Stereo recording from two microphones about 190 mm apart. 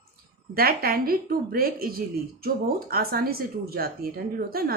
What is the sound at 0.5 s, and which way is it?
Speech, 50° right (ahead or behind).